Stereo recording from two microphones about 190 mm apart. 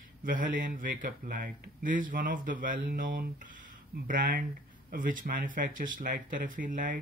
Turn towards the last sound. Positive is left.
turn(degrees=-45)  # may be behind; listen again after turning